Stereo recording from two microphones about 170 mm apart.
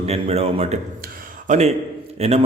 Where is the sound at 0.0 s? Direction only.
35° right (ahead or behind).